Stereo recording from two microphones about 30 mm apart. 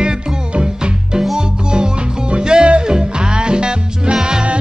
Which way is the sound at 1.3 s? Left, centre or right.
Right.